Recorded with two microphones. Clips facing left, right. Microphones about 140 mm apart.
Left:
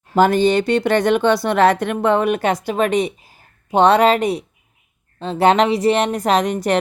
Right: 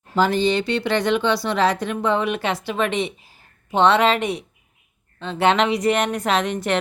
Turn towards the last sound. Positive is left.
turn(degrees=40)  # may be behind; listen again after turning